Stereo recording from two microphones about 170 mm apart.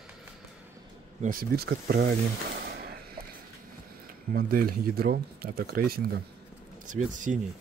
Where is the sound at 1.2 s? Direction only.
55° right (ahead or behind).